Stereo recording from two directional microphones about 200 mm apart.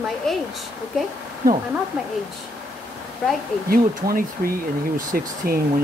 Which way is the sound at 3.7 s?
45° right (ahead or behind).